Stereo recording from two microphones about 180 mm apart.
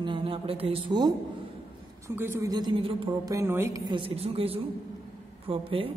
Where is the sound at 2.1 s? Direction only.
15° right (ahead or behind); by 3.3 s 30° right (ahead or behind).